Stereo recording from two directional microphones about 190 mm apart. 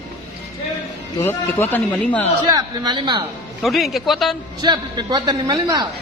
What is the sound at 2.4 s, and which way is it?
Speech, 20° right (ahead or behind).